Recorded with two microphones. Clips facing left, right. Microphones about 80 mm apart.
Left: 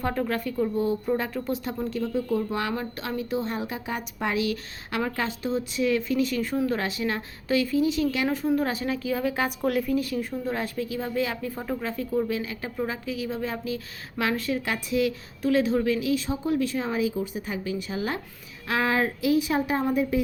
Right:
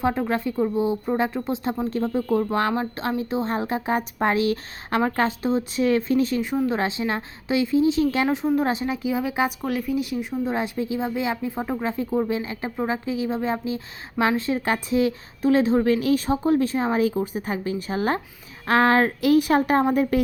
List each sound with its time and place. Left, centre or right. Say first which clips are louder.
0.0 s a woman's voice: right 4 dB; right
1.9 s a woman's voice: right 3 dB; right
8.5 s a woman's voice: right 3 dB; right
9.6 s a woman's voice: left 1 dB; centre
9.9 s speech: right 1 dB; centre; by 18.2 s right
18.7 s a woman's voice: right 6 dB; right